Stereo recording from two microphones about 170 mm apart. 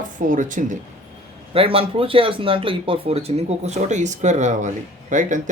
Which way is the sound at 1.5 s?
35° right (ahead or behind).